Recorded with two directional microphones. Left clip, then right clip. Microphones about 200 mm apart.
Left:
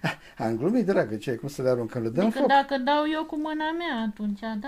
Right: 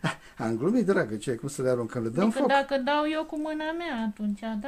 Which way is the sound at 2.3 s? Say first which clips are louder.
Left 3 dB; 10° left (ahead or behind).